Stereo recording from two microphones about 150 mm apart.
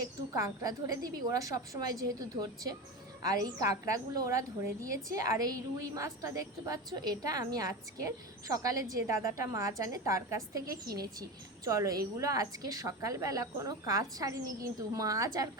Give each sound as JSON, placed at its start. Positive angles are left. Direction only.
{"t": 0.3, "sound": "a woman's voice", "side_deg": -25}